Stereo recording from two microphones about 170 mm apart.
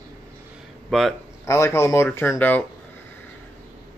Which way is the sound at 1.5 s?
15° left (ahead or behind).